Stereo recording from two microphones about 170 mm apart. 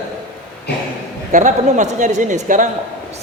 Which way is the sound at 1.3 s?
50° right (ahead or behind).